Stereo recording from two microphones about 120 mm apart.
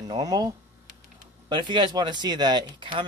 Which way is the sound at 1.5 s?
40° right (ahead or behind).